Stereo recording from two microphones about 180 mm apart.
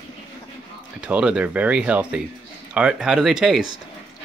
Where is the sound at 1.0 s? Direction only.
5° right (ahead or behind).